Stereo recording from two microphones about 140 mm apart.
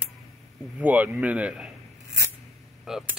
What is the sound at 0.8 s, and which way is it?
Speech, 10° right (ahead or behind).